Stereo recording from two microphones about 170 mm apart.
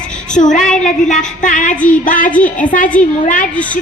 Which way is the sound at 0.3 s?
45° left (ahead or behind).